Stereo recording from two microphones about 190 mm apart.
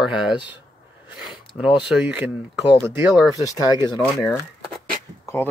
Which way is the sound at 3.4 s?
20° left (ahead or behind).